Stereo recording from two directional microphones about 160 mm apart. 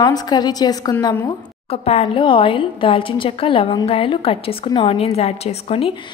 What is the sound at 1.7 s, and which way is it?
A woman's voice, 40° left (ahead or behind).